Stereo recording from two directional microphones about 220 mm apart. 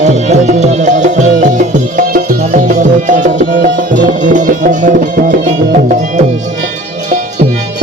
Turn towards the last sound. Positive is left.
turn(degrees=-35)  # may be behind; listen again after turning